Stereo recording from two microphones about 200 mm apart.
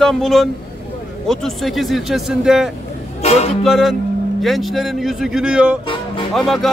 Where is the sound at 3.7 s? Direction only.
Centre (ahead or behind).